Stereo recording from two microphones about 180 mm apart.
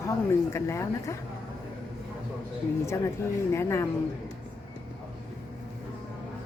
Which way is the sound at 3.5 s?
15° left (ahead or behind).